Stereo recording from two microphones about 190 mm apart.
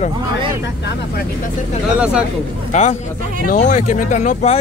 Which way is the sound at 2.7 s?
40° left (ahead or behind).